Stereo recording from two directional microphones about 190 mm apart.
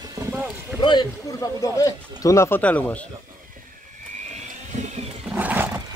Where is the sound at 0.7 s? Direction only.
25° left (ahead or behind).